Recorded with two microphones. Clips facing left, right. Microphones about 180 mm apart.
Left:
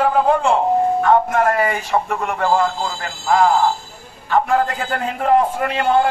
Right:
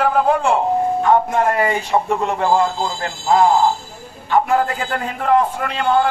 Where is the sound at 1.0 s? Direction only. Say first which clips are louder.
Even; 15° right (ahead or behind).